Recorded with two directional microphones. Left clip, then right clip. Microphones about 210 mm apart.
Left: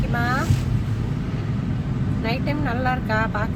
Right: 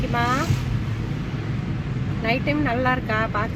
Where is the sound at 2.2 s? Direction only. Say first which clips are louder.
Right 4 dB; 30° right (ahead or behind).